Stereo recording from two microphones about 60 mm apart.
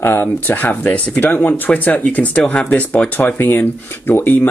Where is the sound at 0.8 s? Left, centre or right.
Centre.